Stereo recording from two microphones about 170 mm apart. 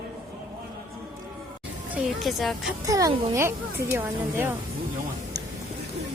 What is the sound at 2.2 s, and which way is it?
Speech, centre (ahead or behind).